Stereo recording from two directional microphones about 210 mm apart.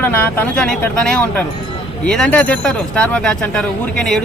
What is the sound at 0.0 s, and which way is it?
A man's voice, 10° left (ahead or behind).